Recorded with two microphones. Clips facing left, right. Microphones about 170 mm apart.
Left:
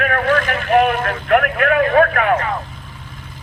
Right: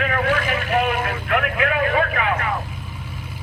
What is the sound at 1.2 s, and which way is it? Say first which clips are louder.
Speech: left 8 dB; 50° left (ahead or behind).